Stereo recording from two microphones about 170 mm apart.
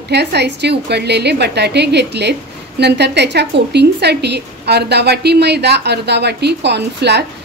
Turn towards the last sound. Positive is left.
turn(degrees=-80)